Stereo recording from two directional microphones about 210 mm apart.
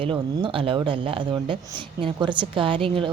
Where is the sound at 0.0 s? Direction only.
25° right (ahead or behind).